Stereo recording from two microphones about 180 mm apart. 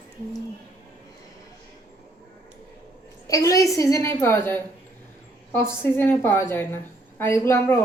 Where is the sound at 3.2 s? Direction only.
20° left (ahead or behind).